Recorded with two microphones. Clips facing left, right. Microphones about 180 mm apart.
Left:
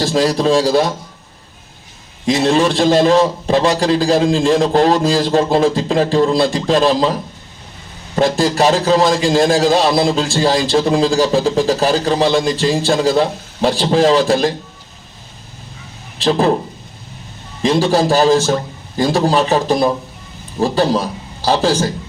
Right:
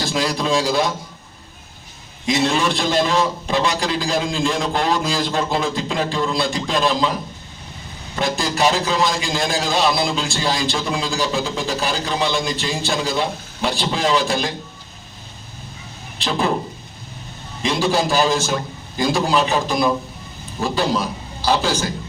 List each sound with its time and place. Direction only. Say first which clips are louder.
0.0 s a man's voice: left 7 dB; 35° left (ahead or behind)
2.4 s a man's voice: left 7 dB; 35° left (ahead or behind)
17.6 s a man's voice: left 6 dB; 35° left (ahead or behind)